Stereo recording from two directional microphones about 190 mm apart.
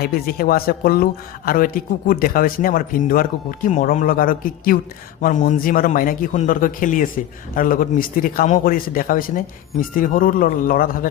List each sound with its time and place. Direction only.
0.0 s a man's voice: 50° left (ahead or behind)